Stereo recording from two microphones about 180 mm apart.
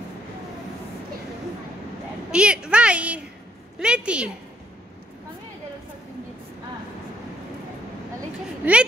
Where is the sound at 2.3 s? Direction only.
5° right (ahead or behind).